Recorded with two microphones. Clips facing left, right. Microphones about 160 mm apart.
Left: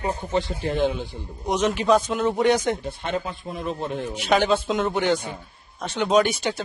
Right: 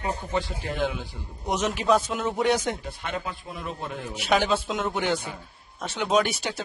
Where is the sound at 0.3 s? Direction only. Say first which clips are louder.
Left 6 dB; 25° left (ahead or behind).